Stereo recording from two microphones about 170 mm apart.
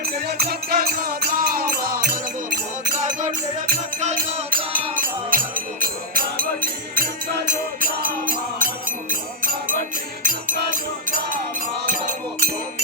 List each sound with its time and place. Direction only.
0.0 s music: 65° right (ahead or behind)
3.0 s music: 45° right (ahead or behind)